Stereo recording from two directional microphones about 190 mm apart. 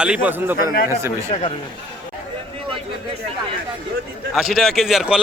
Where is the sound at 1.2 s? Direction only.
30° left (ahead or behind).